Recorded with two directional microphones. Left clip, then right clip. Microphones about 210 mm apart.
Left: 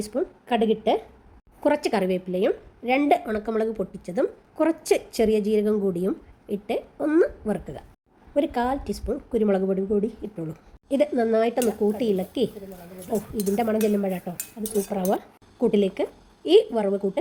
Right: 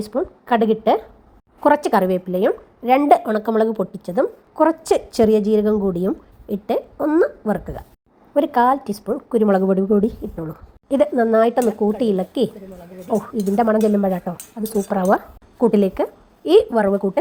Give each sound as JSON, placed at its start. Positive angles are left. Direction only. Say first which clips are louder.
{"t": 0.0, "sound": "a woman's voice", "louder": "right 4 dB", "side_deg": -10}
{"t": 10.3, "sound": "a woman's voice", "louder": "right 4 dB", "side_deg": -5}